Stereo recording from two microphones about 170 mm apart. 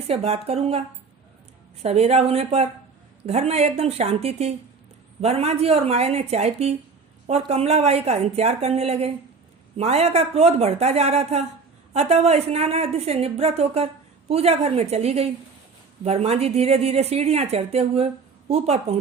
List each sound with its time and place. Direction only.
0.1 s speech: 35° right (ahead or behind)
1.8 s speech: 40° right (ahead or behind)